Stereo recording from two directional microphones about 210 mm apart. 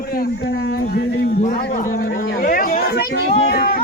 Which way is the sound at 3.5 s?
45° left (ahead or behind).